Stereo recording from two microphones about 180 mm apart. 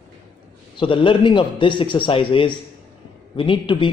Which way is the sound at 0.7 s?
30° left (ahead or behind).